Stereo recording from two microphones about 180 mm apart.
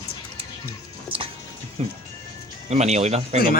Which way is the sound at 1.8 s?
35° right (ahead or behind).